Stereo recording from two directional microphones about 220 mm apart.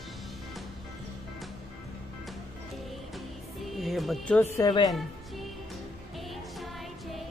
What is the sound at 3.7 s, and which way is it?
Music, centre (ahead or behind).